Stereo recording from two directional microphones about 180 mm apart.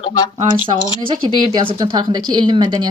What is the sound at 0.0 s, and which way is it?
Speech, 20° left (ahead or behind).